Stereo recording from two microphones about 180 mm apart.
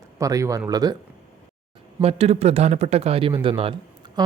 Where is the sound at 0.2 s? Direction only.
20° right (ahead or behind).